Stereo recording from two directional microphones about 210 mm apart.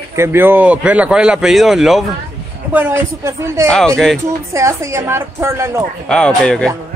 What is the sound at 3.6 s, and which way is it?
Speech, 5° left (ahead or behind).